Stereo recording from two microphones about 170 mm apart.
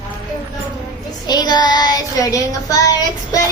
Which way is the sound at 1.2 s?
25° left (ahead or behind).